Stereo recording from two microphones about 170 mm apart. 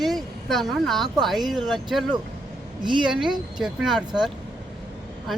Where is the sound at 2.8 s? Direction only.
30° right (ahead or behind).